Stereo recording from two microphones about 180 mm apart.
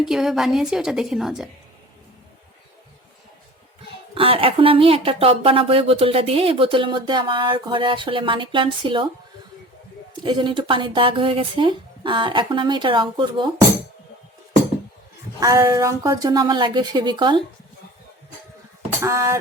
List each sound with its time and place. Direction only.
0.0 s a woman's voice: 5° right (ahead or behind)
4.1 s speech: 30° right (ahead or behind)
10.2 s speech: 25° right (ahead or behind)
15.4 s speech: 20° right (ahead or behind)
19.0 s a sound: 15° right (ahead or behind)